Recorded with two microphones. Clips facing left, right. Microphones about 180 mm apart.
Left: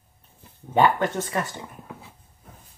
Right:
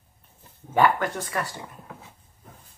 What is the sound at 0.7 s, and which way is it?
Speech, 25° left (ahead or behind).